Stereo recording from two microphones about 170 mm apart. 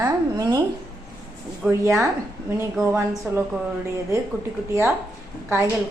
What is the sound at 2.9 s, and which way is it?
Speech, 10° right (ahead or behind).